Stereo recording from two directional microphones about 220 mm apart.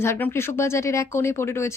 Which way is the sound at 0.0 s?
10° left (ahead or behind).